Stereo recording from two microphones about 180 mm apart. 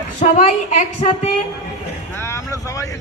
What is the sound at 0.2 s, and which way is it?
A woman's voice, 40° left (ahead or behind).